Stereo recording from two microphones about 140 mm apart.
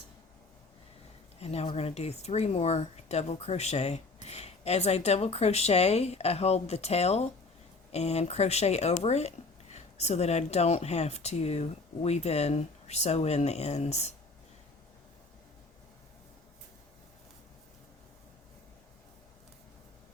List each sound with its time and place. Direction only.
1.4 s speech: 45° left (ahead or behind)